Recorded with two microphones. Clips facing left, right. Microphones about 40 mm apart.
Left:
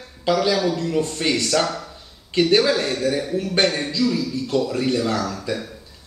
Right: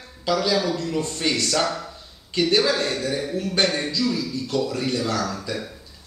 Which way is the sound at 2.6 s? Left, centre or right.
Centre.